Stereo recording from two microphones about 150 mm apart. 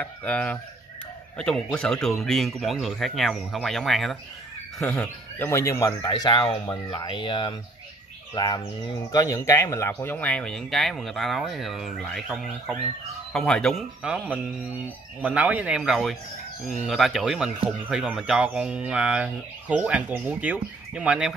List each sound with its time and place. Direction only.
0.0 s speech: 10° left (ahead or behind)